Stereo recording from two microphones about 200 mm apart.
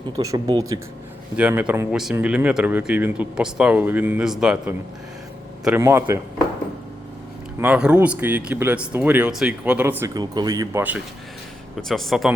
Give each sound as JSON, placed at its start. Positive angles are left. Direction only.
{"t": 0.2, "sound": "speech", "side_deg": -15}
{"t": 7.6, "sound": "speech", "side_deg": -5}
{"t": 11.8, "sound": "speech", "side_deg": 0}